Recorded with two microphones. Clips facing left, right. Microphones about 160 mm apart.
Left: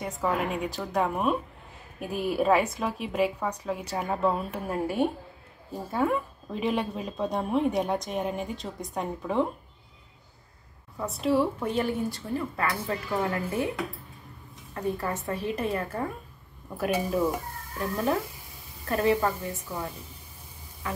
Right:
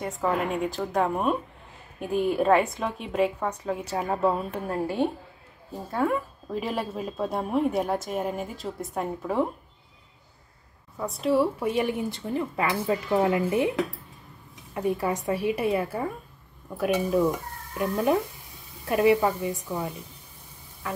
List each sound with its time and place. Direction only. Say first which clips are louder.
0.0 s a woman's voice: right 2 dB; centre (ahead or behind)
4.7 s a woman's voice: even; 10° left (ahead or behind)
5.9 s a woman's voice: right 1 dB; centre (ahead or behind)
11.0 s a woman's voice: right 2 dB; centre (ahead or behind)
11.6 s a woman's voice: right 2 dB; 15° right (ahead or behind)
14.7 s a woman's voice: right 4 dB; 15° right (ahead or behind)
17.7 s a woman's voice: right 4 dB; 15° right (ahead or behind)
20.8 s music: right 1 dB; centre (ahead or behind)